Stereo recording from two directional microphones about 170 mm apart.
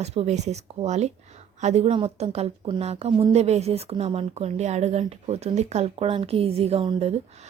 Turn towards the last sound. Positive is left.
turn(degrees=-35)  # may be behind; listen again after turning